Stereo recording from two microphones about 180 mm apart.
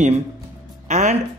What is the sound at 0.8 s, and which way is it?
Music, 40° right (ahead or behind).